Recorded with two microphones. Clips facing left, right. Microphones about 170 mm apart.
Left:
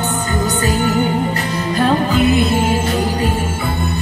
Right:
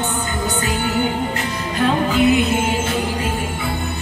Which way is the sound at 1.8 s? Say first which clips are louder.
Left 1 dB; 35° left (ahead or behind).